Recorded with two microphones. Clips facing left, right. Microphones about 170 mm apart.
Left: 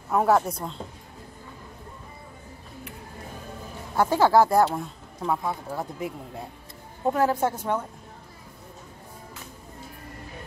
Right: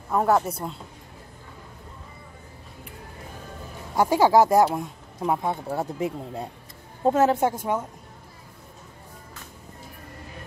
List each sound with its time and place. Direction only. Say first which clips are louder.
0.1 s speech: even; centre (ahead or behind)
3.9 s speech: right 1 dB; 10° right (ahead or behind)